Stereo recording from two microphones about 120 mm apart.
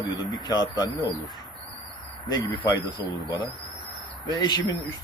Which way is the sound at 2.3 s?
35° left (ahead or behind).